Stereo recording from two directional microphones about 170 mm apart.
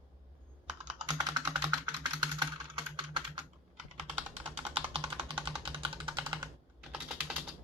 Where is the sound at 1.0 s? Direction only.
25° right (ahead or behind).